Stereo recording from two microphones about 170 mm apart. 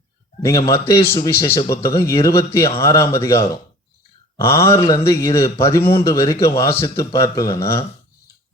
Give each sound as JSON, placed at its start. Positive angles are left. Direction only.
{"t": 0.4, "sound": "a man's voice", "side_deg": 20}